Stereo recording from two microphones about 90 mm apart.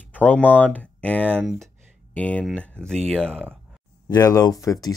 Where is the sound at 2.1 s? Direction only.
15° left (ahead or behind).